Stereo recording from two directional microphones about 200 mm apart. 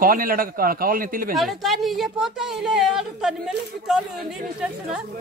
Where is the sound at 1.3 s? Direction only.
Centre (ahead or behind).